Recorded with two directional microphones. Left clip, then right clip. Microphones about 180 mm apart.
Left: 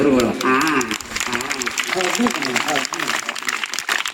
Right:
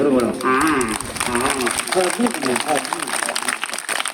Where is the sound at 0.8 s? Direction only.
60° right (ahead or behind).